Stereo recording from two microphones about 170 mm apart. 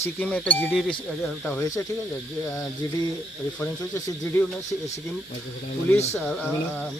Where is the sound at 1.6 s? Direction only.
20° left (ahead or behind).